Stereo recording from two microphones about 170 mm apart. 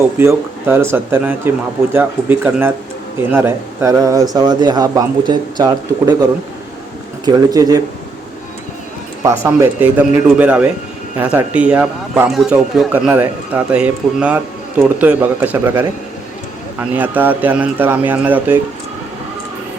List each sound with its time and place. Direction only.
0.2 s a man's voice: 15° right (ahead or behind)
7.3 s speech: 20° right (ahead or behind)
9.2 s a man's voice: 15° right (ahead or behind)
16.9 s a man's voice: 10° right (ahead or behind)